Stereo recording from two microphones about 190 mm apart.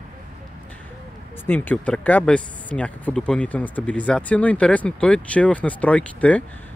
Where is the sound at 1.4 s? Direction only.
10° left (ahead or behind).